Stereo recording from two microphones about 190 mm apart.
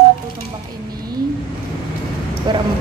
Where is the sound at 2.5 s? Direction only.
20° right (ahead or behind).